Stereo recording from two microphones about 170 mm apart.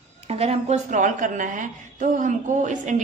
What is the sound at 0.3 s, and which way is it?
A woman's voice, 40° right (ahead or behind).